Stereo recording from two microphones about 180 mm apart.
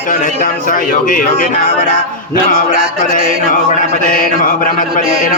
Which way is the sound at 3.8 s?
50° left (ahead or behind).